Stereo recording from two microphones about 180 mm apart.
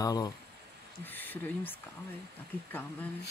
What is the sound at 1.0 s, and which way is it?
Speech, 10° left (ahead or behind).